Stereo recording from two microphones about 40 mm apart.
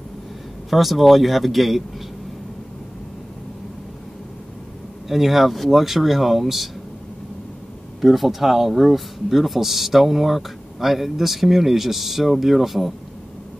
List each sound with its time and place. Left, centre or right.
0.7 s speech: centre
5.0 s speech: centre
8.0 s speech: centre